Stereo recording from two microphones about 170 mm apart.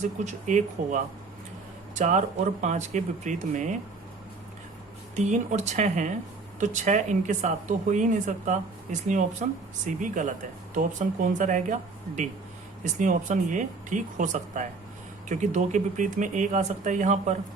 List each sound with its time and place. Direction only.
0.0 s speech: 45° right (ahead or behind)
5.1 s speech: 45° right (ahead or behind)
11.3 s speech: 45° right (ahead or behind)